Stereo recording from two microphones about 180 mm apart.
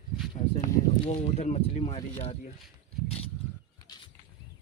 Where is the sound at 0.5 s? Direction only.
35° left (ahead or behind).